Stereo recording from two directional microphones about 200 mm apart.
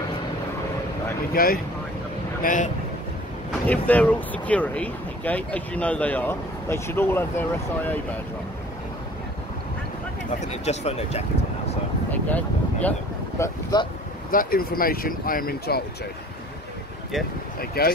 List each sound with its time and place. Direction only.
1.3 s speech: 45° left (ahead or behind)
3.6 s speech: 10° left (ahead or behind)
10.4 s speech: 35° left (ahead or behind)
12.1 s speech: 10° left (ahead or behind)
13.4 s speech: 20° left (ahead or behind)
14.3 s speech: 45° left (ahead or behind)
17.6 s speech: 50° left (ahead or behind)